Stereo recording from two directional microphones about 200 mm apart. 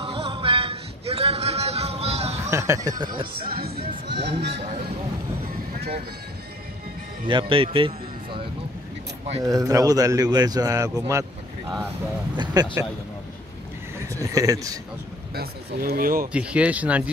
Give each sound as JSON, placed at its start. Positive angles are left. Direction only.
{"t": 0.0, "sound": "a sound", "side_deg": -30}
{"t": 2.5, "sound": "speech", "side_deg": -15}
{"t": 3.4, "sound": "speech", "side_deg": -50}
{"t": 7.2, "sound": "a man's voice", "side_deg": -25}
{"t": 12.6, "sound": "speech", "side_deg": -20}
{"t": 13.9, "sound": "a sound", "side_deg": -15}
{"t": 15.3, "sound": "speech", "side_deg": -50}
{"t": 16.3, "sound": "a man's voice", "side_deg": -5}